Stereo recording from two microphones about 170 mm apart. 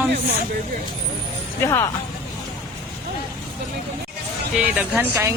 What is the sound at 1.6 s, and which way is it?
Speech, 15° left (ahead or behind).